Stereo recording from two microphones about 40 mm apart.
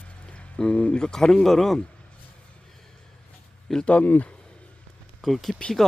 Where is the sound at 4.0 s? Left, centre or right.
Left.